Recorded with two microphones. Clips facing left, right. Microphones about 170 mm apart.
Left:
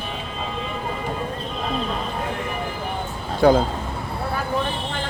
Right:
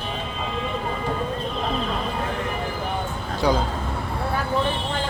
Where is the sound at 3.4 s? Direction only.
55° left (ahead or behind).